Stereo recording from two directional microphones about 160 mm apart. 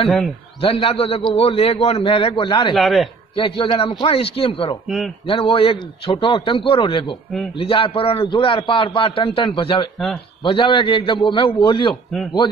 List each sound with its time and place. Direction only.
0.6 s a man's voice: 35° left (ahead or behind)
2.7 s a man's voice: centre (ahead or behind)
3.3 s a man's voice: 30° left (ahead or behind)
4.8 s a man's voice: centre (ahead or behind)
5.2 s a man's voice: 35° left (ahead or behind)
9.9 s a man's voice: centre (ahead or behind)
10.4 s a man's voice: 35° left (ahead or behind)